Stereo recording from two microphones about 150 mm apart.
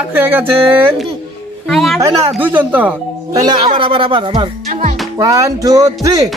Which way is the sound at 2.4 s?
10° right (ahead or behind).